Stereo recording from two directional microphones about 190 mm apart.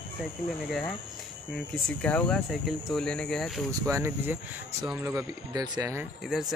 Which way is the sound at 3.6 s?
15° right (ahead or behind).